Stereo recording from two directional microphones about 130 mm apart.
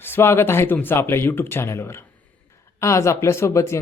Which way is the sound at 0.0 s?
15° left (ahead or behind).